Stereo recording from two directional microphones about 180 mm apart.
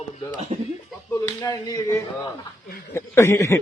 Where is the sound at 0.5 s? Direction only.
35° right (ahead or behind).